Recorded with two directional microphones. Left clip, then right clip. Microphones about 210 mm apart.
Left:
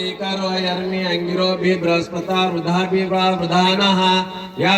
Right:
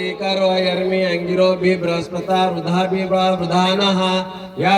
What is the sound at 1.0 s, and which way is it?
Mantra, 55° right (ahead or behind).